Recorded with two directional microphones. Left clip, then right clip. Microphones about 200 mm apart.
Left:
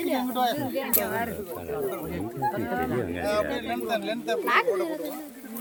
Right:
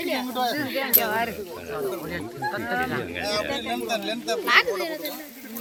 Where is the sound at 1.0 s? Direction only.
20° right (ahead or behind).